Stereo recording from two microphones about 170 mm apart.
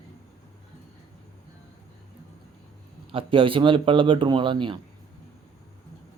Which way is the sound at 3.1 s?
30° right (ahead or behind).